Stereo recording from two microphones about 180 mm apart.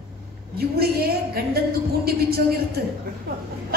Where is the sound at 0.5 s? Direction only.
60° right (ahead or behind).